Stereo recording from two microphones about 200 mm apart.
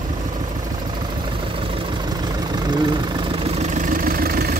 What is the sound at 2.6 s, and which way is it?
Vehicle, 20° right (ahead or behind).